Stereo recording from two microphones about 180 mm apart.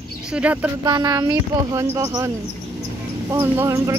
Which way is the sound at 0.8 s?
20° right (ahead or behind).